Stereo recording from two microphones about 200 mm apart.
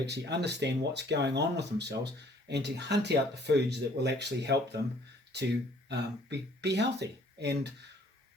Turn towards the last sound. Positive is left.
turn(degrees=-60)  # may be behind; listen again after turning